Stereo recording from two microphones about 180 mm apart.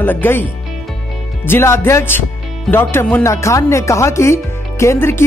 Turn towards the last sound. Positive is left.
turn(degrees=15)  # may be behind; listen again after turning